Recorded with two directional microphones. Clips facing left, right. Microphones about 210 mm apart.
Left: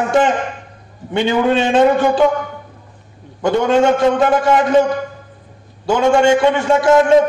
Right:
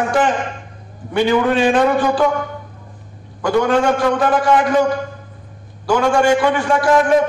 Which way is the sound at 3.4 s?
25° left (ahead or behind).